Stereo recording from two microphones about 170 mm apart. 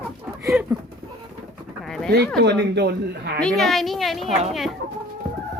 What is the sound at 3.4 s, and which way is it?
Speech, 5° left (ahead or behind).